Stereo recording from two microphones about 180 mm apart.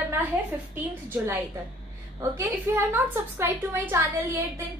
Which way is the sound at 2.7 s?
15° right (ahead or behind).